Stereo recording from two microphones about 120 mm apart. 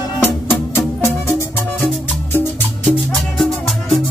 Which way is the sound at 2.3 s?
15° left (ahead or behind).